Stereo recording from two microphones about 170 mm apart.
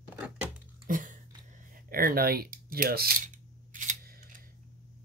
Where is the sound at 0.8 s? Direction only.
50° right (ahead or behind).